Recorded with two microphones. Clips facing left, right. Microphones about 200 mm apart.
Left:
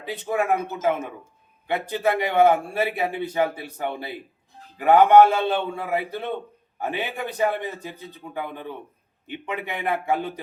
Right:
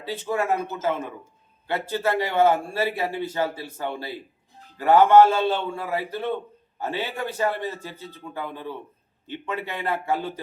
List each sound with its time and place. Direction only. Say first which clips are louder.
0.0 s a man's voice: left 1 dB; 15° left (ahead or behind)